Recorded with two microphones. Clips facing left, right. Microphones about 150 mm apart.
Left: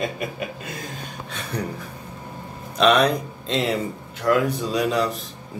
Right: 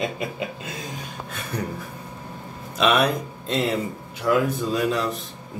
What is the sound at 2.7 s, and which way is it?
A man's voice, 5° right (ahead or behind).